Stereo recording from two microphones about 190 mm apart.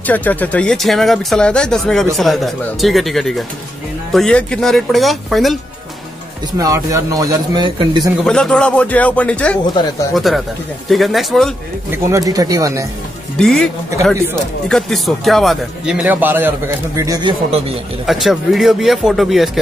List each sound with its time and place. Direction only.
0.0 s speech: 10° left (ahead or behind)
6.6 s a man's voice: 20° right (ahead or behind)
8.3 s speech: 5° left (ahead or behind)
11.9 s speech: 15° right (ahead or behind)
13.4 s speech: centre (ahead or behind); by 17.3 s 15° right (ahead or behind)
18.0 s speech: centre (ahead or behind)